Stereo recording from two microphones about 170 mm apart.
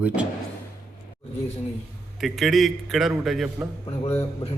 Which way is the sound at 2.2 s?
Centre (ahead or behind).